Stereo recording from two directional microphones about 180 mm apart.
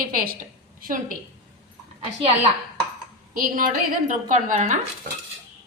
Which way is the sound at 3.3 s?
50° right (ahead or behind).